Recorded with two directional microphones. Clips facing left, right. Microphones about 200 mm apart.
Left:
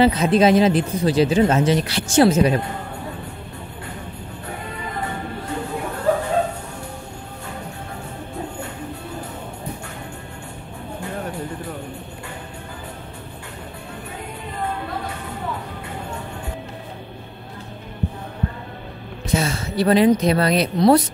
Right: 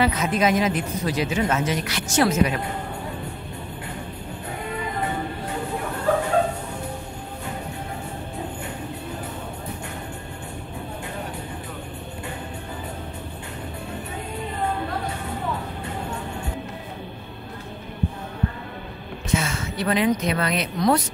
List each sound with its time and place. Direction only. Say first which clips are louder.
0.0 s speech: left 6 dB; 30° left (ahead or behind)
19.3 s a woman's voice: left 4 dB; 35° left (ahead or behind)